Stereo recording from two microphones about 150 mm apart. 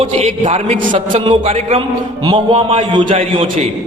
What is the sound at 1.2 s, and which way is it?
A man's voice, 35° right (ahead or behind).